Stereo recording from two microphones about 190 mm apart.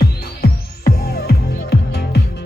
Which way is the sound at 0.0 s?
55° left (ahead or behind).